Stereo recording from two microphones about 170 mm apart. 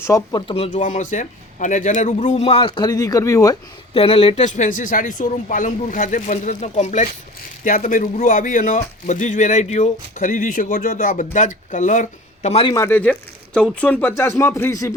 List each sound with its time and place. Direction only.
0.0 s speech: 20° left (ahead or behind)
0.4 s a man's voice: 35° left (ahead or behind); by 3.6 s 20° left (ahead or behind)
3.9 s a man's voice: 35° left (ahead or behind)
4.4 s a man's voice: 45° left (ahead or behind)
12.7 s speech: 15° left (ahead or behind)